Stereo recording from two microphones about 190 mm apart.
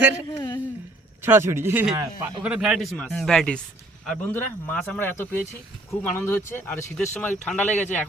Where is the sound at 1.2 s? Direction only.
10° right (ahead or behind).